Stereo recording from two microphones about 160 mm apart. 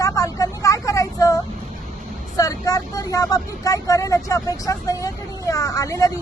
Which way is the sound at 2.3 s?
20° left (ahead or behind).